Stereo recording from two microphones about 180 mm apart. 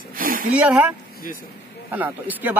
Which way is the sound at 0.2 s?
50° right (ahead or behind).